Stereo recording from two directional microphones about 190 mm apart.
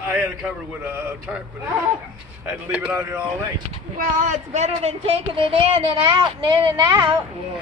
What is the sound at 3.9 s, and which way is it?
Speech, 40° right (ahead or behind).